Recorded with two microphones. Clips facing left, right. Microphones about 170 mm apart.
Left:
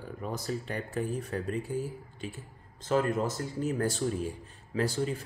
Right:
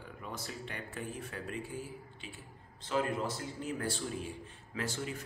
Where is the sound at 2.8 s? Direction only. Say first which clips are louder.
Left 6 dB; 45° left (ahead or behind).